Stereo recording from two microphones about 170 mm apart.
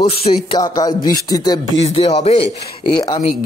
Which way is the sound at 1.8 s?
35° left (ahead or behind).